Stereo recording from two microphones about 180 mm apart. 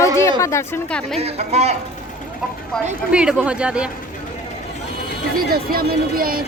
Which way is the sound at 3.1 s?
5° right (ahead or behind).